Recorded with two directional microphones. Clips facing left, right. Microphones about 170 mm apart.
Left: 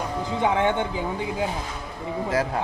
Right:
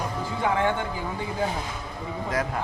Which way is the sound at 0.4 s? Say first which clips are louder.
Left 2 dB; 20° left (ahead or behind).